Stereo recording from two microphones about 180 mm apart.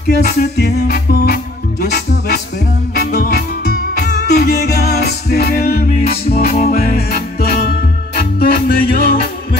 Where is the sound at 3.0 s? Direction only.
60° left (ahead or behind).